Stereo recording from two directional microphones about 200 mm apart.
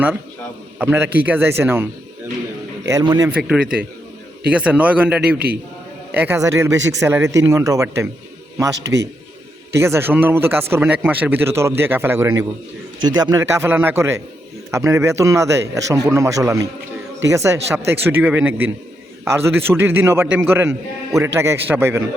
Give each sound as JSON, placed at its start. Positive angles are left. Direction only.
{"t": 0.8, "sound": "a man's voice", "side_deg": -10}
{"t": 3.3, "sound": "a man's voice", "side_deg": -5}
{"t": 9.7, "sound": "a man's voice", "side_deg": -15}